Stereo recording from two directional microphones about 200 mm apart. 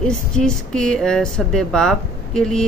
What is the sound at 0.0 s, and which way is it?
Speech, 5° left (ahead or behind).